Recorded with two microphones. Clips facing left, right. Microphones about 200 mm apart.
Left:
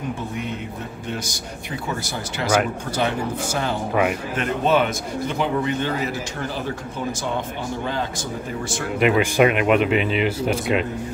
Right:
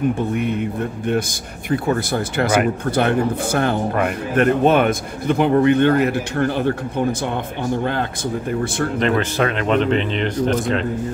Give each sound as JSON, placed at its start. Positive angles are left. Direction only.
{"t": 0.3, "sound": "a man's voice", "side_deg": -55}
{"t": 8.9, "sound": "speech", "side_deg": 10}